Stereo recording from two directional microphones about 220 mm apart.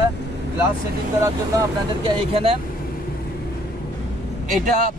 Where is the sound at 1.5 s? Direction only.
25° right (ahead or behind).